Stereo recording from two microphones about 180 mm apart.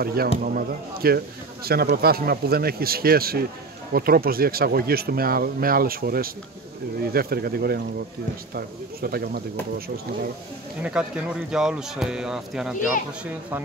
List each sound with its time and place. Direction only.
0.0 s speech: 60° right (ahead or behind)
10.8 s speech: 5° right (ahead or behind)